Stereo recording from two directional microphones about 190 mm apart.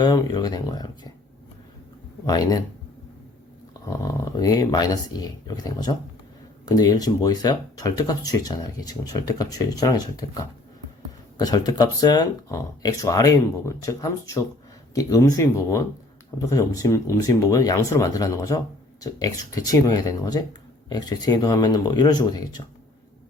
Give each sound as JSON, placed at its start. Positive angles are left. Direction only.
{"t": 0.0, "sound": "speech", "side_deg": 20}
{"t": 2.2, "sound": "speech", "side_deg": 20}
{"t": 3.8, "sound": "speech", "side_deg": 20}